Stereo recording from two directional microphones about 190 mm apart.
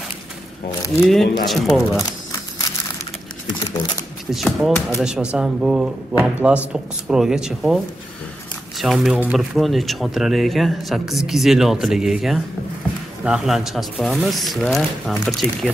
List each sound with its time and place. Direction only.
0.7 s speech: 15° left (ahead or behind)
1.0 s speech: centre (ahead or behind)
4.3 s speech: centre (ahead or behind)